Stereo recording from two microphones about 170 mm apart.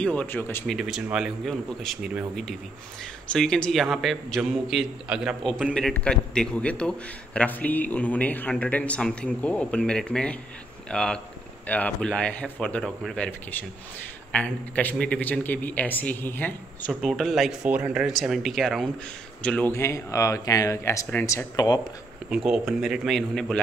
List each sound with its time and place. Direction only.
0.0 s a man's voice: 10° left (ahead or behind)
0.7 s a man's voice: centre (ahead or behind); by 21.8 s 25° left (ahead or behind)
22.3 s a man's voice: 5° right (ahead or behind)